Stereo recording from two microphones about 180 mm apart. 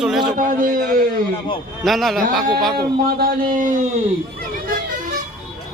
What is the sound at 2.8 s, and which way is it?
Speech, 55° right (ahead or behind).